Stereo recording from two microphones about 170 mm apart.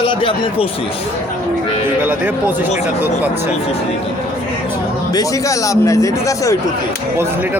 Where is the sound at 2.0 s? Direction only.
10° right (ahead or behind).